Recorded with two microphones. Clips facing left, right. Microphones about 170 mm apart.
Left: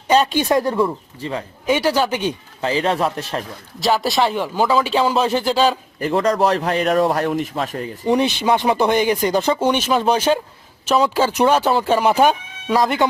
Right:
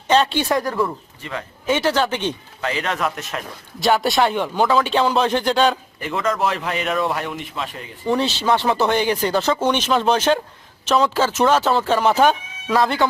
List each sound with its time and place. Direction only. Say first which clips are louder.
0.1 s speech: left 2 dB; 10° left (ahead or behind); by 1.5 s 30° left (ahead or behind)
1.6 s speech: left 1 dB; 10° left (ahead or behind)
2.6 s a man's voice: left 6 dB; 30° left (ahead or behind)
3.8 s speech: even; centre (ahead or behind)
6.0 s a man's voice: left 7 dB; 35° left (ahead or behind)
8.0 s speech: left 2 dB; 15° left (ahead or behind)